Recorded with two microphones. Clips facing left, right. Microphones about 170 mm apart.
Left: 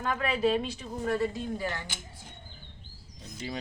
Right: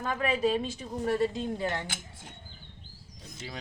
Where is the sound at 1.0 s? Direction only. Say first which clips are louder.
Right 1 dB; 20° right (ahead or behind).